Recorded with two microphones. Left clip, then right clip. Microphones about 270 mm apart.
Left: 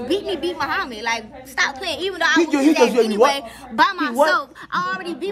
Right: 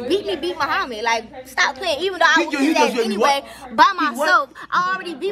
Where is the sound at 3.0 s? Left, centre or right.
Centre.